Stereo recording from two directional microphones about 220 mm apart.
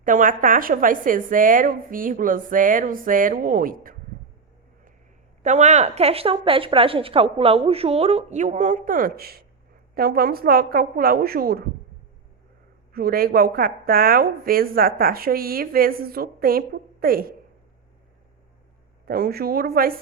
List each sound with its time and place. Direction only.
0.0 s a woman's voice: 35° right (ahead or behind)
5.4 s a woman's voice: 30° right (ahead or behind)
12.9 s a woman's voice: 40° right (ahead or behind)
19.0 s a woman's voice: 45° right (ahead or behind)